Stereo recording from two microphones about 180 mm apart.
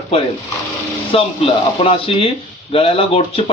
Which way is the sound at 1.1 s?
30° left (ahead or behind).